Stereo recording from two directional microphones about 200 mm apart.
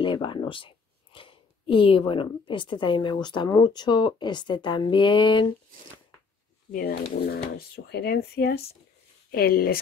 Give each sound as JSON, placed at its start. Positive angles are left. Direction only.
{"t": 0.0, "sound": "speech", "side_deg": 25}
{"t": 6.7, "sound": "speech", "side_deg": 45}